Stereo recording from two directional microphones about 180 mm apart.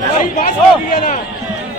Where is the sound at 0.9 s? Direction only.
45° left (ahead or behind).